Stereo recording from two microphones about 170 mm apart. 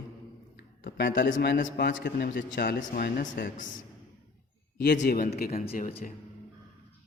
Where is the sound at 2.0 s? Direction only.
70° left (ahead or behind); by 3.7 s 55° left (ahead or behind).